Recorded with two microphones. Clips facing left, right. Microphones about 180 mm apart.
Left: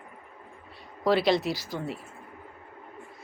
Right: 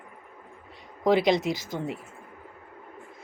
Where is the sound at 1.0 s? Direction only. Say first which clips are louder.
Right 2 dB; 20° right (ahead or behind).